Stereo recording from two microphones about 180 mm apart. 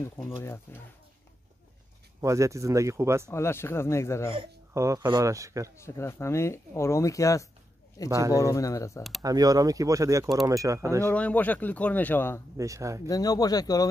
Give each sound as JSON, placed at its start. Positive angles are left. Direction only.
{"t": 0.4, "sound": "speech", "side_deg": 15}
{"t": 2.2, "sound": "speech", "side_deg": -15}
{"t": 3.3, "sound": "speech", "side_deg": 15}
{"t": 4.7, "sound": "speech", "side_deg": -15}
{"t": 5.8, "sound": "speech", "side_deg": 15}
{"t": 8.1, "sound": "speech", "side_deg": -15}
{"t": 8.4, "sound": "speech", "side_deg": 20}
{"t": 9.2, "sound": "speech", "side_deg": -20}
{"t": 11.1, "sound": "speech", "side_deg": 10}
{"t": 12.5, "sound": "speech", "side_deg": -15}
{"t": 13.0, "sound": "speech", "side_deg": 20}